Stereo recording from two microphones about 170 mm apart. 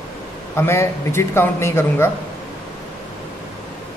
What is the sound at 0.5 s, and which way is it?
A man's voice, 15° left (ahead or behind).